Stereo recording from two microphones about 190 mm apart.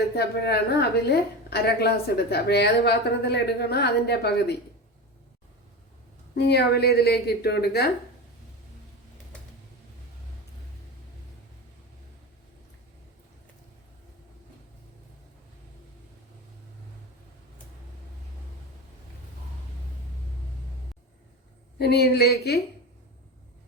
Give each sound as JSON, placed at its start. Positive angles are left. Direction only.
{"t": 0.2, "sound": "a woman's voice", "side_deg": 60}
{"t": 6.3, "sound": "a woman's voice", "side_deg": 60}
{"t": 21.8, "sound": "a woman's voice", "side_deg": 60}